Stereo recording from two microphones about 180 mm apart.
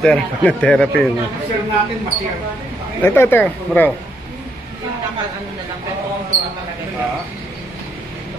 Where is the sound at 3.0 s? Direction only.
10° left (ahead or behind).